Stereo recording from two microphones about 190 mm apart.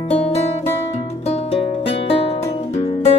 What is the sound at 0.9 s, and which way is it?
Music, 35° left (ahead or behind).